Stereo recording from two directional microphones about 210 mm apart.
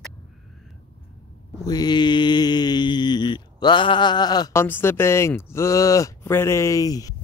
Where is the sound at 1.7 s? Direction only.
20° left (ahead or behind).